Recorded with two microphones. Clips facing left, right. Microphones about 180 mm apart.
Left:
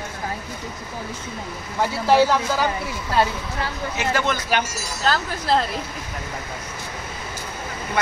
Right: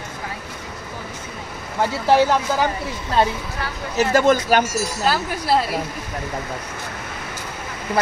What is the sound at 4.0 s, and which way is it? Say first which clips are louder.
Speech: right 8 dB; 45° right (ahead or behind).